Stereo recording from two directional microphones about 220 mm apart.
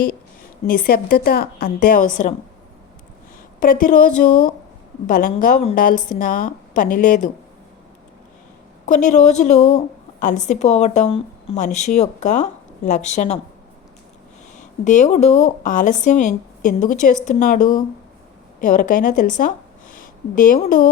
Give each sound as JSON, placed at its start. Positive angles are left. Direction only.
{"t": 0.7, "sound": "a woman's voice", "side_deg": 40}
{"t": 3.6, "sound": "a woman's voice", "side_deg": 40}
{"t": 8.9, "sound": "a woman's voice", "side_deg": 35}
{"t": 14.8, "sound": "a woman's voice", "side_deg": 35}